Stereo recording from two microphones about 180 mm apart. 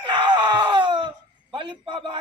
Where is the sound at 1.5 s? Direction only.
30° right (ahead or behind).